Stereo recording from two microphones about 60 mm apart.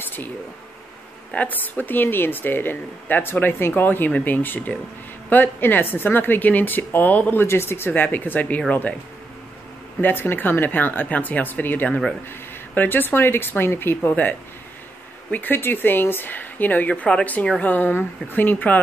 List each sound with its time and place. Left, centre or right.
1.3 s speech: left
7.4 s speech: left
10.0 s speech: left
15.3 s speech: left